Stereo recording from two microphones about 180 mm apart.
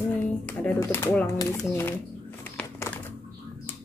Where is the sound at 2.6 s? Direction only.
10° left (ahead or behind).